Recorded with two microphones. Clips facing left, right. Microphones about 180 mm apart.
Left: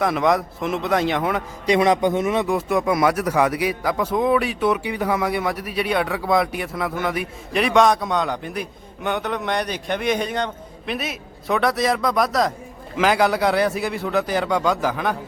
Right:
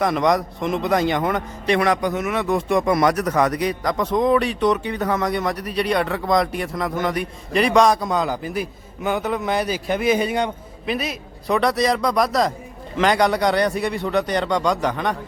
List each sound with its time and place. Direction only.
0.0 s a man's voice: centre (ahead or behind)
1.6 s a man's voice: 20° left (ahead or behind)
2.5 s a man's voice: 5° left (ahead or behind)